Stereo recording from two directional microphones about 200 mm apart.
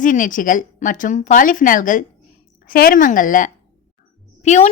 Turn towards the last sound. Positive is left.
turn(degrees=35)  # may be behind; listen again after turning